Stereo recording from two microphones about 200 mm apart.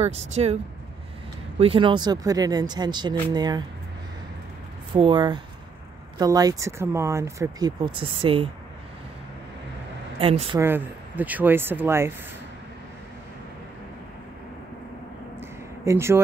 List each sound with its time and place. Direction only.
0.0 s speech: 30° right (ahead or behind)
1.6 s speech: 25° right (ahead or behind)
4.9 s speech: 25° right (ahead or behind)
10.1 s a woman's voice: 30° right (ahead or behind)
10.6 s speech: 10° right (ahead or behind)
15.8 s speech: 15° right (ahead or behind)